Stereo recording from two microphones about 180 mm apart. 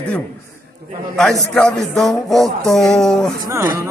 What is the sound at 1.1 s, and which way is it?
A man's voice, 5° left (ahead or behind).